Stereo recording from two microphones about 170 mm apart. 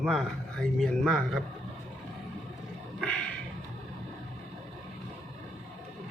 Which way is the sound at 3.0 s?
5° left (ahead or behind).